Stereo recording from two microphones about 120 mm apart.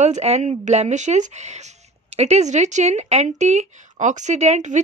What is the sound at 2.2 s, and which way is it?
Speech, 65° right (ahead or behind).